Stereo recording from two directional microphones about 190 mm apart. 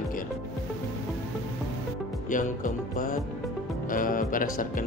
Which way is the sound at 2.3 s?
45° left (ahead or behind).